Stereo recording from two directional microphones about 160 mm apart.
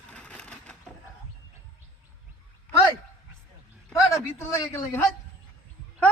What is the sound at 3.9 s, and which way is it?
A man's voice, 20° left (ahead or behind).